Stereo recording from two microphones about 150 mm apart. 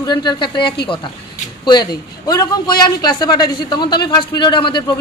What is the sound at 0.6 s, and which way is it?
Speech, 90° left.